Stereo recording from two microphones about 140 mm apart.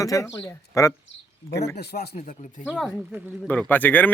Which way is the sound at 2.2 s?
60° left (ahead or behind).